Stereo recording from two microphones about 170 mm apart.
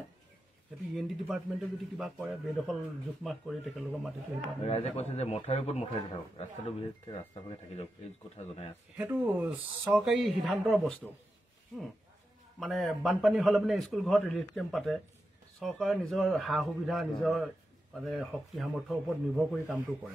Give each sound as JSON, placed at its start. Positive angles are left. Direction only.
{"t": 0.9, "sound": "a man's voice", "side_deg": 0}
{"t": 4.6, "sound": "a man's voice", "side_deg": 35}
{"t": 8.9, "sound": "speech", "side_deg": -10}
{"t": 12.5, "sound": "a man's voice", "side_deg": 0}